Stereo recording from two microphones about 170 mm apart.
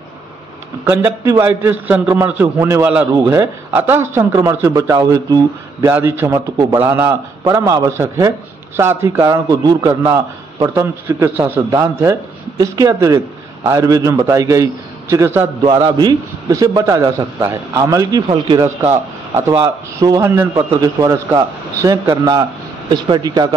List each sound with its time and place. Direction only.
0.8 s a man's voice: 15° right (ahead or behind)
15.6 s a man's voice: 25° right (ahead or behind)
19.6 s a man's voice: 20° right (ahead or behind)